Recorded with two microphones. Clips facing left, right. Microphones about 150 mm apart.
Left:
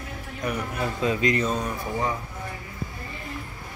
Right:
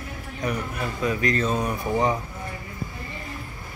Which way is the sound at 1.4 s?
5° right (ahead or behind).